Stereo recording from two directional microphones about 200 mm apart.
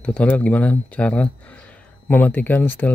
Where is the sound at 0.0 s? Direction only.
5° left (ahead or behind).